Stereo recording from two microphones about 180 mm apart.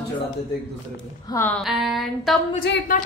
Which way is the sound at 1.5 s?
Centre (ahead or behind).